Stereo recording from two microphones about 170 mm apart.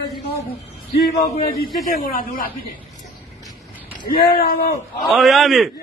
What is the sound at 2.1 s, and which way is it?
Speech, 55° left (ahead or behind).